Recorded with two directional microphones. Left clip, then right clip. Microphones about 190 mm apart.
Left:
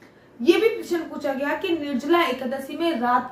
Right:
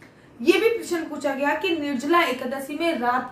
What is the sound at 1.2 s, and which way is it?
A woman's voice, 10° right (ahead or behind).